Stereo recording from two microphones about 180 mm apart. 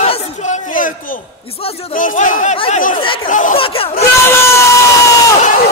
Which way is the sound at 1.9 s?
45° left (ahead or behind).